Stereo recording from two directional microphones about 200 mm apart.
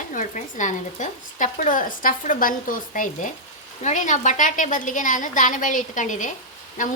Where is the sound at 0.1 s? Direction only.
40° left (ahead or behind).